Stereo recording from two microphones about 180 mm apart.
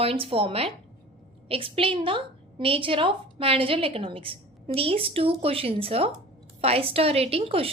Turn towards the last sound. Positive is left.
turn(degrees=-30)  # may be behind; listen again after turning